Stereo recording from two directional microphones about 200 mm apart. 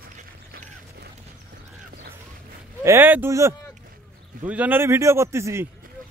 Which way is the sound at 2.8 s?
10° right (ahead or behind).